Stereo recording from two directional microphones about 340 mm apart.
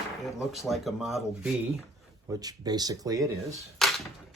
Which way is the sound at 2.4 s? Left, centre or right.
Centre.